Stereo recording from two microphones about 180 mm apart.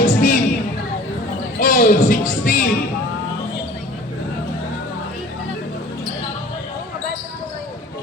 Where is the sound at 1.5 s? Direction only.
50° left (ahead or behind).